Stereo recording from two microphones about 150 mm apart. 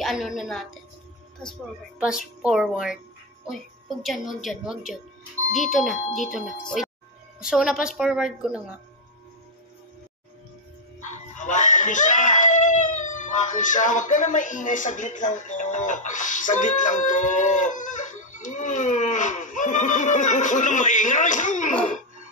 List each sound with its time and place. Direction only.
0.0 s speech: centre (ahead or behind)
2.4 s speech: 5° right (ahead or behind)
4.0 s speech: centre (ahead or behind)
11.0 s speech: 55° left (ahead or behind)